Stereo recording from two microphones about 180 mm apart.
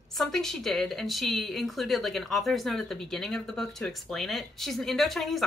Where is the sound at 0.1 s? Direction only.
Centre (ahead or behind).